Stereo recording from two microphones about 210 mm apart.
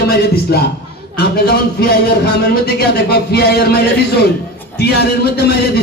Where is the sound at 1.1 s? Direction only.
50° left (ahead or behind).